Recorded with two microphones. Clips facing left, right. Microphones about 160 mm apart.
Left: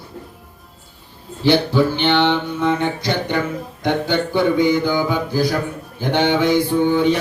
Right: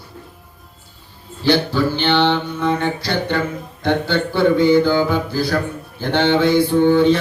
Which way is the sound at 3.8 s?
15° left (ahead or behind).